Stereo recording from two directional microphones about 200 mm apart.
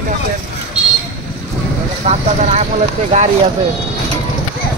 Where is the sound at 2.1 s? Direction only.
35° right (ahead or behind).